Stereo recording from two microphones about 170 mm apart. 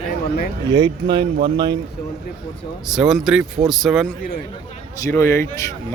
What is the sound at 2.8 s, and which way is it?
Speech, centre (ahead or behind).